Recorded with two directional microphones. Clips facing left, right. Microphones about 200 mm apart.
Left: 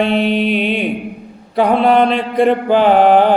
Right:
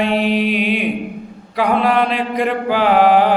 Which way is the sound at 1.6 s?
30° left (ahead or behind).